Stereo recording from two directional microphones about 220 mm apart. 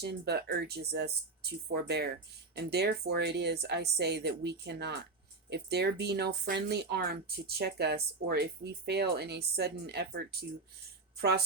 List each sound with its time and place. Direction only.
0.0 s speech: 50° right (ahead or behind)
11.2 s speech: 45° right (ahead or behind)